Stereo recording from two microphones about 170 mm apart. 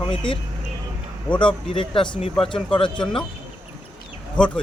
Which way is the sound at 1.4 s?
30° left (ahead or behind).